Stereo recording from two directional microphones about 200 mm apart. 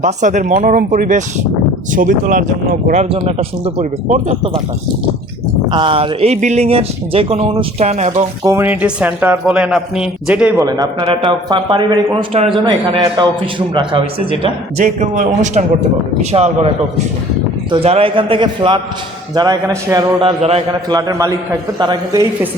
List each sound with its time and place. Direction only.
0.0 s speech: 40° right (ahead or behind)
5.7 s speech: 25° right (ahead or behind)
8.4 s speech: 10° right (ahead or behind)
10.7 s a man's voice: 20° right (ahead or behind)
17.7 s a man's voice: 30° right (ahead or behind)